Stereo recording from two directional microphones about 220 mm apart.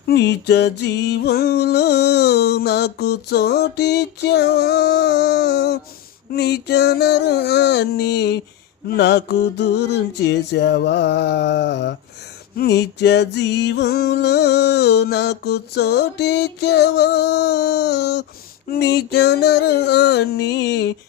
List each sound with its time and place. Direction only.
0.1 s music: 50° left (ahead or behind)